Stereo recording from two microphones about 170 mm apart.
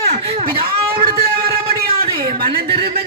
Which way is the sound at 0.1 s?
35° right (ahead or behind).